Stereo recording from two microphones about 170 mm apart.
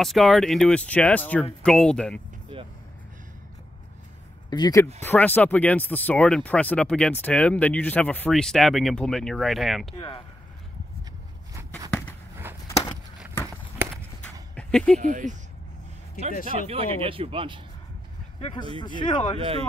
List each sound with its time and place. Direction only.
0.0 s speech: centre (ahead or behind)
4.5 s speech: 20° left (ahead or behind)
5.0 s speech: 10° left (ahead or behind)
9.9 s speech: 35° left (ahead or behind)
12.4 s a sound: 15° right (ahead or behind)
14.5 s a sound: 5° left (ahead or behind)
15.0 s speech: 50° right (ahead or behind)
16.6 s speech: 35° right (ahead or behind)
18.8 s speech: 25° left (ahead or behind)
19.3 s speech: 35° right (ahead or behind)